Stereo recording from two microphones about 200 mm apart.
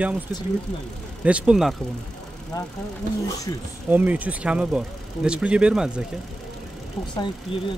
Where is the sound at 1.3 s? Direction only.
5° right (ahead or behind).